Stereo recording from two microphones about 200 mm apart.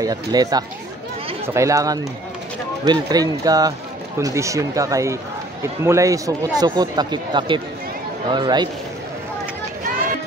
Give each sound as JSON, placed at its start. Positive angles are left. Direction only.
{"t": 0.0, "sound": "speech", "side_deg": -20}